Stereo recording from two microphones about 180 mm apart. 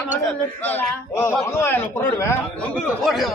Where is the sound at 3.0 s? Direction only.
Centre (ahead or behind).